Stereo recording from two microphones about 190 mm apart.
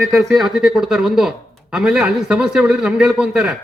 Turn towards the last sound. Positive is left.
turn(degrees=-5)  # may be behind; listen again after turning